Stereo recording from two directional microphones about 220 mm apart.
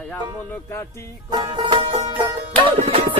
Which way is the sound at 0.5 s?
10° left (ahead or behind).